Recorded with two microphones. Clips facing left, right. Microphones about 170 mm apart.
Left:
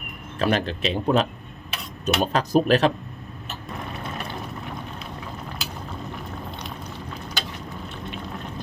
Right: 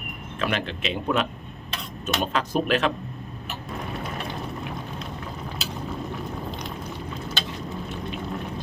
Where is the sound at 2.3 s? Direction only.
40° left (ahead or behind).